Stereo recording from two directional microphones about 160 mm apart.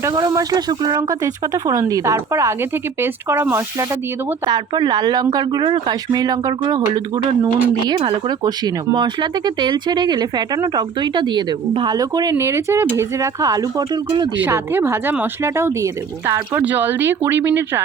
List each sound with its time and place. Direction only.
0.0 s speech: 25° right (ahead or behind)
4.4 s speech: 25° right (ahead or behind)
14.3 s speech: 15° right (ahead or behind)